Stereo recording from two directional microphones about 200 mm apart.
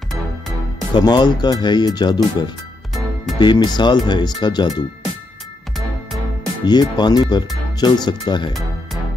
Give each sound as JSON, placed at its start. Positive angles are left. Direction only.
{"t": 0.9, "sound": "speech", "side_deg": 20}
{"t": 6.6, "sound": "speech", "side_deg": 20}